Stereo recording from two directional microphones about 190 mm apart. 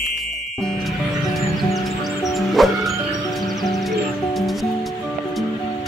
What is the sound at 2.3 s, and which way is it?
Music, centre (ahead or behind).